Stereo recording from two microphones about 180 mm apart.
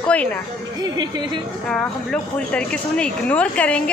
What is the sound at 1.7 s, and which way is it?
Speech, 5° left (ahead or behind).